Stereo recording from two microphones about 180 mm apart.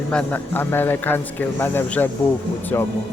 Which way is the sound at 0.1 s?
5° left (ahead or behind).